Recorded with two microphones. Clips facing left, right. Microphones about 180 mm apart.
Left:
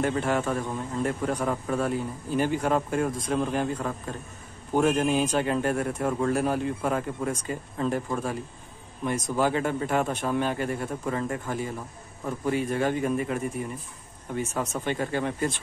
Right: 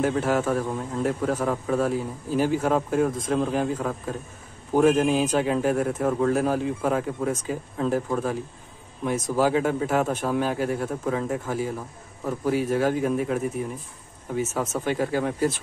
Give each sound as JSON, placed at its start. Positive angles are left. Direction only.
{"t": 0.0, "sound": "a man's voice", "side_deg": -5}